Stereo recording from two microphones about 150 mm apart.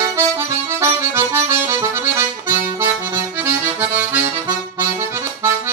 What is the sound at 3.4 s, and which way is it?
Music, 10° right (ahead or behind).